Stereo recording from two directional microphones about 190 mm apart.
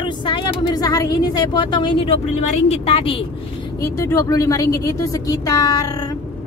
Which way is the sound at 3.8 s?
15° left (ahead or behind).